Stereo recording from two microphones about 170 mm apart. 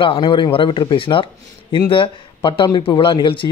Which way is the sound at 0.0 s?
30° left (ahead or behind).